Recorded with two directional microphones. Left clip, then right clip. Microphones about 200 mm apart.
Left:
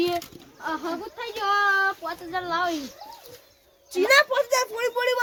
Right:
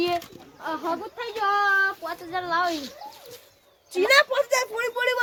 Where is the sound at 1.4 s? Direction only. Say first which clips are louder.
Even; 15° right (ahead or behind).